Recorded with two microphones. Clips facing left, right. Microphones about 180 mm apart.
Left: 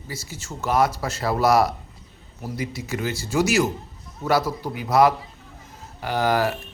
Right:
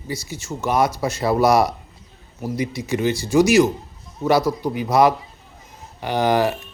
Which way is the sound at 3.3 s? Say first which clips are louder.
Right 6 dB; 15° right (ahead or behind).